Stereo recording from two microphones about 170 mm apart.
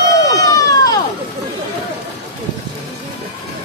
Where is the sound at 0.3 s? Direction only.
20° left (ahead or behind).